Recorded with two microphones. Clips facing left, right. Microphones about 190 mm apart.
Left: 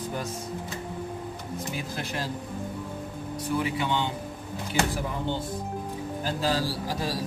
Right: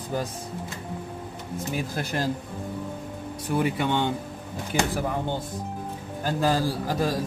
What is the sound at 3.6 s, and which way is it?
Speech, 55° right (ahead or behind).